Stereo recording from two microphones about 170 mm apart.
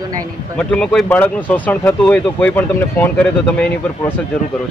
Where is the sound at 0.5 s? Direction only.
5° left (ahead or behind).